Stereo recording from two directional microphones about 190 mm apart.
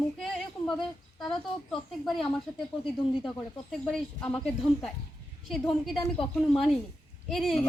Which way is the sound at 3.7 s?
5° left (ahead or behind).